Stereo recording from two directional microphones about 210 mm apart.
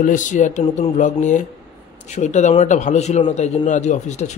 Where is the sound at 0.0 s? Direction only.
40° left (ahead or behind).